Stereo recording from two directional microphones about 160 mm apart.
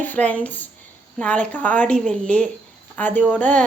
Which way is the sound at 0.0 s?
10° left (ahead or behind).